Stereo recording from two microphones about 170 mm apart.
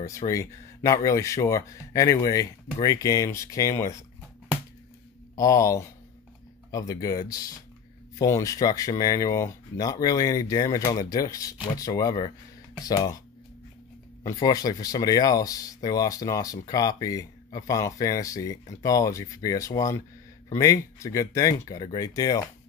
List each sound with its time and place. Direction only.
0.3 s speech: 20° left (ahead or behind)
5.3 s speech: 20° left (ahead or behind)
14.2 s speech: 20° left (ahead or behind)